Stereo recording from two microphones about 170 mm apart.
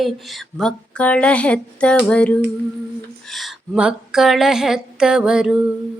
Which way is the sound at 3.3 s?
Centre (ahead or behind).